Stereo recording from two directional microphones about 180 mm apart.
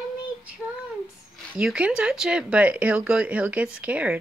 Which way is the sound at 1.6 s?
5° right (ahead or behind).